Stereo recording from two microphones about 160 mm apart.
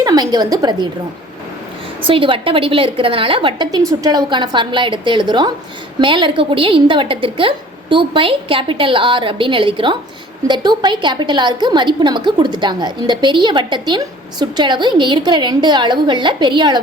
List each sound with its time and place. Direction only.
0.0 s a woman's voice: 25° right (ahead or behind)
2.0 s a woman's voice: 35° right (ahead or behind)